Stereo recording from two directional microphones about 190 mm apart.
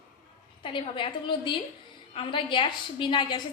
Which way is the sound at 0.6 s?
25° left (ahead or behind).